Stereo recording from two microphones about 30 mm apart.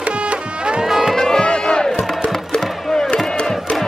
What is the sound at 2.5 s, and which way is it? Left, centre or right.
Music, left.